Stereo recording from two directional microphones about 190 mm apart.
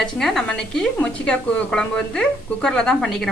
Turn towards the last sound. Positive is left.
turn(degrees=5)  # may be behind; listen again after turning